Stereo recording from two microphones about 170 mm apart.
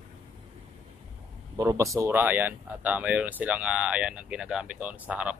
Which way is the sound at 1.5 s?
20° right (ahead or behind).